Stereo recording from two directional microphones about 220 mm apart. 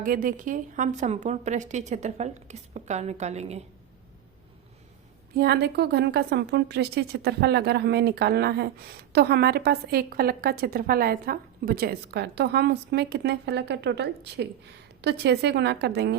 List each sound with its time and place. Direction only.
0.0 s a woman's voice: 40° right (ahead or behind)
5.3 s a woman's voice: 45° right (ahead or behind)